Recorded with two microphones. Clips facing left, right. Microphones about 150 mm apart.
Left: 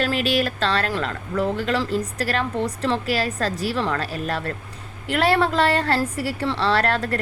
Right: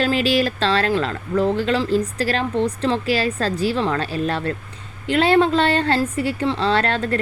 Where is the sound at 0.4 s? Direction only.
30° right (ahead or behind).